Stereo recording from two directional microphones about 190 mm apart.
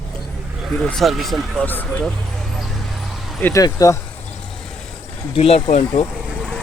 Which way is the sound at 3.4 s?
10° left (ahead or behind).